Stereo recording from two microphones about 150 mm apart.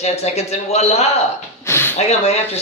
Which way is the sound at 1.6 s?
15° left (ahead or behind).